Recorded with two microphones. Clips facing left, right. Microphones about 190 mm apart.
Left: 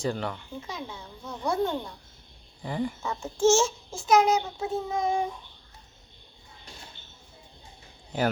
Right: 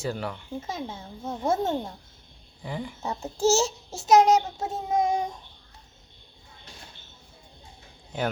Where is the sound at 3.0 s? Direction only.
35° right (ahead or behind).